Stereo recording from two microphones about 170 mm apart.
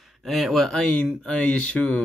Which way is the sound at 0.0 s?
Centre (ahead or behind).